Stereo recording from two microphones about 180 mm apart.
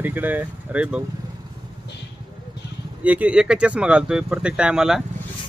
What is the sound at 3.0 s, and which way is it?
Speech, 10° right (ahead or behind).